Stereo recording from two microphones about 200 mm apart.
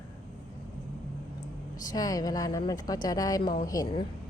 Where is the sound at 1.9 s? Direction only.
20° left (ahead or behind).